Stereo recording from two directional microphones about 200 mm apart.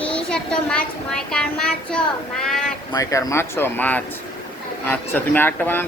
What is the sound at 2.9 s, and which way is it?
Speech, 15° left (ahead or behind).